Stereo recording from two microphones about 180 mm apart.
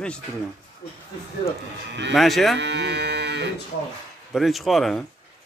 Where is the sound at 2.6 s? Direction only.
75° right (ahead or behind).